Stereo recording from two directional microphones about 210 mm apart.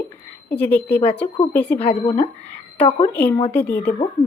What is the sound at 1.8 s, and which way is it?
Speech, 25° left (ahead or behind).